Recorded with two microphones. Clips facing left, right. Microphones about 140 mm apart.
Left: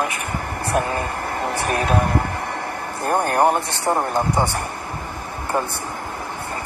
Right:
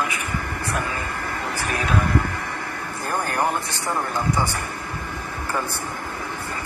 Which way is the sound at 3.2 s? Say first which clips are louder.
Left 6 dB; 55° left (ahead or behind).